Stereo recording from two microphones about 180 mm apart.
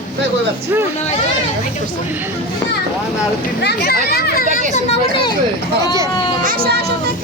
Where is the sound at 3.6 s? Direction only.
60° left (ahead or behind).